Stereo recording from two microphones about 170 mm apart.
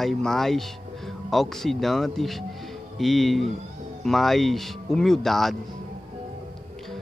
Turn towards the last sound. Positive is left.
turn(degrees=0)  # may be behind; listen again after turning